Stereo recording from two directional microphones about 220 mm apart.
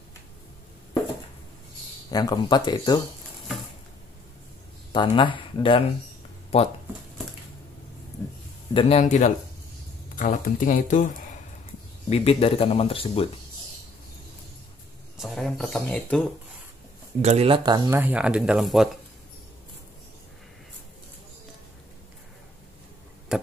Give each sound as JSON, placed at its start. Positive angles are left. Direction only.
{"t": 2.0, "sound": "speech", "side_deg": 15}
{"t": 4.9, "sound": "speech", "side_deg": 20}
{"t": 8.7, "sound": "speech", "side_deg": 25}
{"t": 15.1, "sound": "a sound", "side_deg": 0}
{"t": 17.2, "sound": "speech", "side_deg": -30}
{"t": 23.3, "sound": "chop", "side_deg": -5}